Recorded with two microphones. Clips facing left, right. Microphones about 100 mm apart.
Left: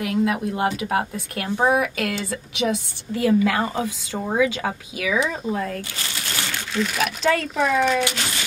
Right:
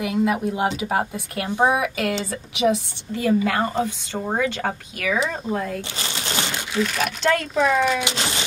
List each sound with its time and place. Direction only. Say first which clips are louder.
0.0 s a woman's voice: right 1 dB; 5° right (ahead or behind)
5.9 s crumpling: right 3 dB; 25° right (ahead or behind)
6.8 s a woman's voice: even; centre (ahead or behind)
8.0 s speech: even; 25° right (ahead or behind)